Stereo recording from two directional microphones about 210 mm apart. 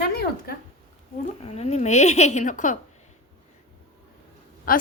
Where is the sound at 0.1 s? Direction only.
45° left (ahead or behind).